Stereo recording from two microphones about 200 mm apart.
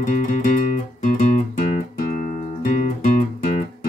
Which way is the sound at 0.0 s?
40° left (ahead or behind).